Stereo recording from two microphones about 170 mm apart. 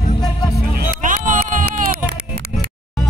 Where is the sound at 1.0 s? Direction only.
50° right (ahead or behind).